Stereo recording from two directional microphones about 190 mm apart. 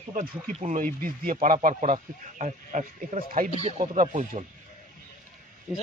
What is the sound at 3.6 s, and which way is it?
Speech, 30° right (ahead or behind).